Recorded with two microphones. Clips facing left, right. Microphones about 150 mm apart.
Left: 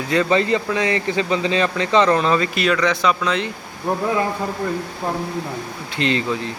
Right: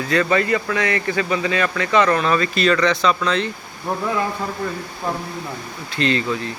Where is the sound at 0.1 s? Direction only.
20° left (ahead or behind).